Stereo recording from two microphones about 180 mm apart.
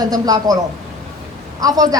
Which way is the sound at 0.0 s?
20° right (ahead or behind).